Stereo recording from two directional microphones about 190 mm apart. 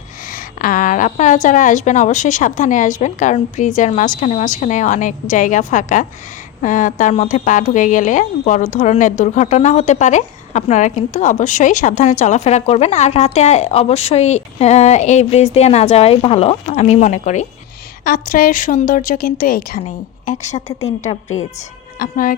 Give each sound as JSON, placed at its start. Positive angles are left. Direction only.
{"t": 0.3, "sound": "a woman's voice", "side_deg": 45}
{"t": 20.2, "sound": "a woman's voice", "side_deg": 40}
{"t": 21.9, "sound": "a woman's voice", "side_deg": 50}